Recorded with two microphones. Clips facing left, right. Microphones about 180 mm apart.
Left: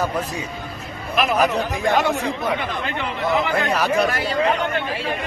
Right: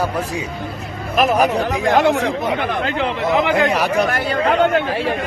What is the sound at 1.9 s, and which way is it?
Speech, 60° right (ahead or behind).